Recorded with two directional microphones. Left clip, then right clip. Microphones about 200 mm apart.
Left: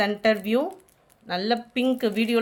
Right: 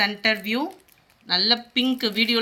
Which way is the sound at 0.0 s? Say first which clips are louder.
Even; 55° left (ahead or behind).